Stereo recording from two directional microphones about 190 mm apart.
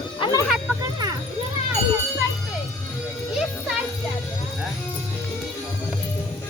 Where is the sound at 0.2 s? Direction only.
20° left (ahead or behind).